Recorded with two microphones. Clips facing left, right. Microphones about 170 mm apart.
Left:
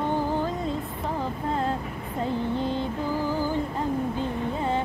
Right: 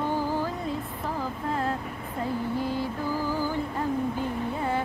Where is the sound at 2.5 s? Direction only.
25° left (ahead or behind).